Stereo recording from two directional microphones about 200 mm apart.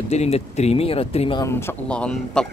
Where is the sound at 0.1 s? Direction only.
30° left (ahead or behind).